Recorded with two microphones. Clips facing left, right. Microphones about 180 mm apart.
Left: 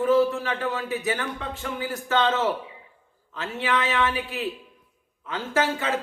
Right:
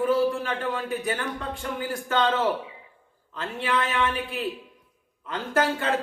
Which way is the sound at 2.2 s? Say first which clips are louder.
Right 1 dB; 5° left (ahead or behind).